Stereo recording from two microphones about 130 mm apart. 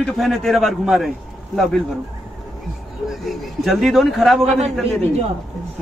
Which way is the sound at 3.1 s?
Centre (ahead or behind).